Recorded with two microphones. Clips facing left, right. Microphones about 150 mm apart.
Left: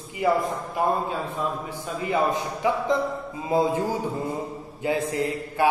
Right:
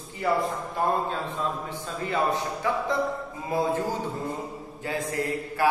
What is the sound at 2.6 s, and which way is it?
A man's voice, 15° left (ahead or behind).